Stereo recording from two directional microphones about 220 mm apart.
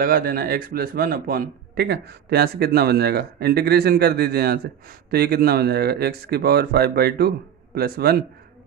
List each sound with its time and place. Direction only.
0.0 s speech: 40° right (ahead or behind)